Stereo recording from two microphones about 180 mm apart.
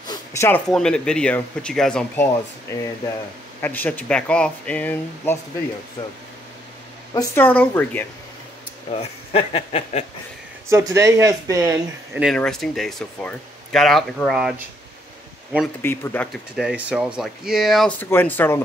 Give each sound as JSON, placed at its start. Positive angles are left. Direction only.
{"t": 0.1, "sound": "a sound", "side_deg": 15}
{"t": 0.7, "sound": "speech", "side_deg": 5}
{"t": 2.7, "sound": "speech", "side_deg": 15}
{"t": 7.2, "sound": "speech", "side_deg": 10}
{"t": 8.9, "sound": "speech", "side_deg": 35}
{"t": 10.7, "sound": "speech", "side_deg": -15}
{"t": 12.4, "sound": "speech", "side_deg": 5}
{"t": 15.8, "sound": "speech", "side_deg": 10}
{"t": 16.5, "sound": "speech", "side_deg": -5}